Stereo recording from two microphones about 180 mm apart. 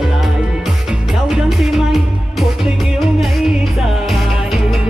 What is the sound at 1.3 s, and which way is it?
Music, centre (ahead or behind).